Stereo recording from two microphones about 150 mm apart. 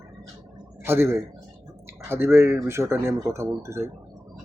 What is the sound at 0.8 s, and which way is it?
A man's voice, 15° right (ahead or behind).